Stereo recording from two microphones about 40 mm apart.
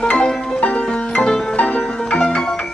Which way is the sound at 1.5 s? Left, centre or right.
Left.